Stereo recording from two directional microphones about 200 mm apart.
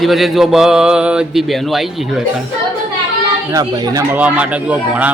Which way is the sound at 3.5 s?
20° right (ahead or behind).